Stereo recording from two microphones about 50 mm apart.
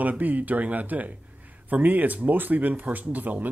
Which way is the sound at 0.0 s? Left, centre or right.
Right.